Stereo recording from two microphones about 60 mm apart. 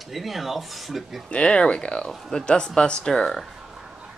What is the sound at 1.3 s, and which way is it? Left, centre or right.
Speech, centre.